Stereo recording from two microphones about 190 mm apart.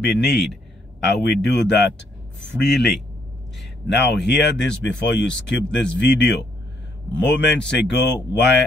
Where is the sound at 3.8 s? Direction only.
65° left (ahead or behind).